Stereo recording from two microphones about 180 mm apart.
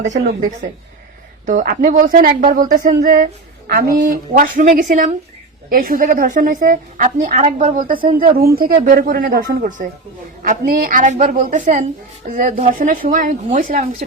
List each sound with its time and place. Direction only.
0.1 s a woman's voice: 45° right (ahead or behind)